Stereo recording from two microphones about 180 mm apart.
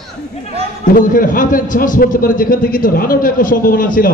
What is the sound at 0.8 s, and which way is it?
A man's voice, 50° left (ahead or behind).